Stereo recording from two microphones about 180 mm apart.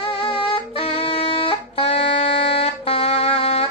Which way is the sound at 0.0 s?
30° left (ahead or behind).